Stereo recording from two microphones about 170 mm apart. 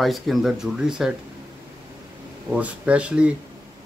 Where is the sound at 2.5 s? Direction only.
5° right (ahead or behind).